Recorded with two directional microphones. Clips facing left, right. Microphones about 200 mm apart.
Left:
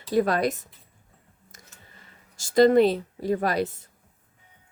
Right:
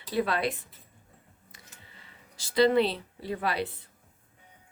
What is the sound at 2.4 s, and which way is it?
Speech, 45° left (ahead or behind).